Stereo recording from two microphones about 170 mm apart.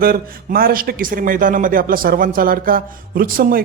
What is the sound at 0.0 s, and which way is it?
A man's voice, 60° right (ahead or behind).